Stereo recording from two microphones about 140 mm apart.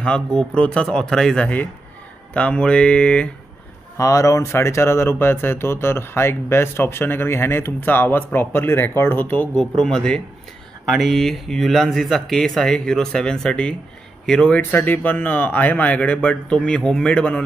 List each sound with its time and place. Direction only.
0.0 s speech: 5° left (ahead or behind)
4.0 s speech: 25° left (ahead or behind)